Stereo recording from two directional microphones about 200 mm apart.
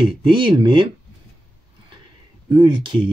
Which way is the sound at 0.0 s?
25° right (ahead or behind).